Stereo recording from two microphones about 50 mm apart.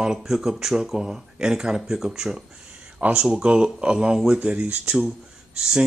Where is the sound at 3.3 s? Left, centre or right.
Centre.